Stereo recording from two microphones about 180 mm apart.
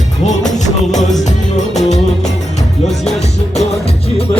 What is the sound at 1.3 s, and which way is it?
Music, 40° left (ahead or behind).